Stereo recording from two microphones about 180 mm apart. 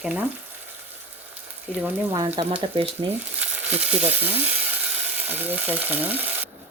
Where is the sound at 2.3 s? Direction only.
30° right (ahead or behind).